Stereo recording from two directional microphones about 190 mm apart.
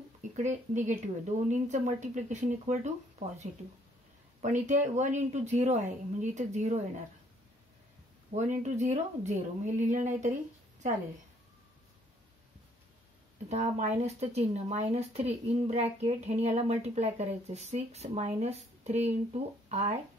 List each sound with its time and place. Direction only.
0.4 s speech: 40° right (ahead or behind)
8.3 s speech: 40° right (ahead or behind)
13.5 s speech: 40° right (ahead or behind)